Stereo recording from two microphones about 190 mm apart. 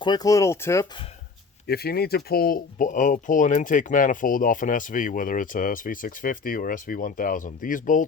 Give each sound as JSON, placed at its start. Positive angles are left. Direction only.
{"t": 0.0, "sound": "speech", "side_deg": 20}
{"t": 1.6, "sound": "speech", "side_deg": 55}